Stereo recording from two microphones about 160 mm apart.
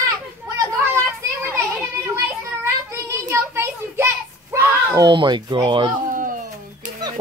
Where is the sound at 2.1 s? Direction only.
15° right (ahead or behind).